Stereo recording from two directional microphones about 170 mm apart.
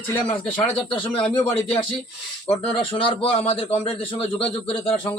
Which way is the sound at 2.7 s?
30° left (ahead or behind).